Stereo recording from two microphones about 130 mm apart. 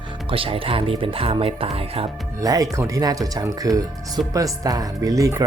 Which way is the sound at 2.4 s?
25° right (ahead or behind).